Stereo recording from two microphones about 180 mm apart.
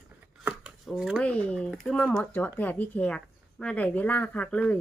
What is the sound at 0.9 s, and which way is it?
Speech, 5° right (ahead or behind).